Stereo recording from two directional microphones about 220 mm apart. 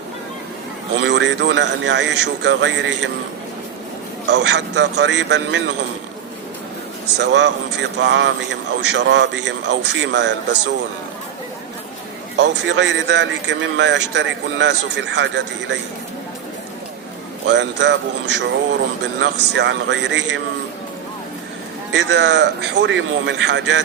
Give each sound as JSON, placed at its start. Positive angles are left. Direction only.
{"t": 0.9, "sound": "speech", "side_deg": -55}
{"t": 4.3, "sound": "speech", "side_deg": -50}
{"t": 7.2, "sound": "speech", "side_deg": -55}
{"t": 12.4, "sound": "speech", "side_deg": -55}
{"t": 17.4, "sound": "a man's voice", "side_deg": -55}
{"t": 21.9, "sound": "a man's voice", "side_deg": -55}